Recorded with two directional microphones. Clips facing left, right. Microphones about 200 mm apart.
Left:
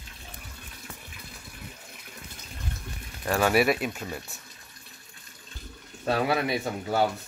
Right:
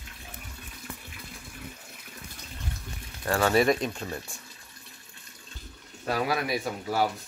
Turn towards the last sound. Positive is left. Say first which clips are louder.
# left 2 dB
turn(degrees=25)  # may be behind; listen again after turning